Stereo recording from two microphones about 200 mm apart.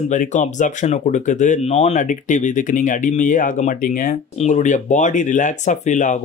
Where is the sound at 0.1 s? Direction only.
40° left (ahead or behind).